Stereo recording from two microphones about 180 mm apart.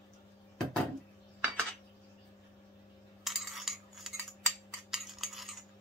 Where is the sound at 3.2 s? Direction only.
Centre (ahead or behind).